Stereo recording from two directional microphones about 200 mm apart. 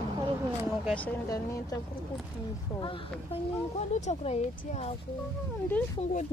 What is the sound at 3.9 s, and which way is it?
Speech, 35° left (ahead or behind).